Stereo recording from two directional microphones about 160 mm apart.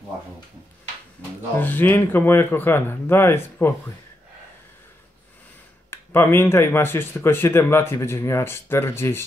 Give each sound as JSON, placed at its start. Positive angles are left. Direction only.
{"t": 1.6, "sound": "speech", "side_deg": 10}
{"t": 5.9, "sound": "speech", "side_deg": 15}